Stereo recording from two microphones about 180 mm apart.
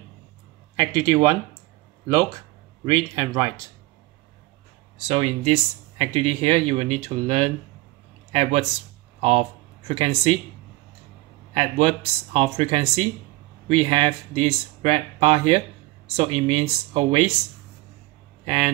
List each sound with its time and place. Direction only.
0.7 s speech: 20° right (ahead or behind)
2.8 s speech: 20° right (ahead or behind)
4.9 s speech: 35° right (ahead or behind)
11.5 s speech: 35° right (ahead or behind)
18.4 s speech: 30° right (ahead or behind)